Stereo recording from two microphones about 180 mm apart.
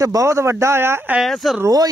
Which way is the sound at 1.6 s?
20° right (ahead or behind).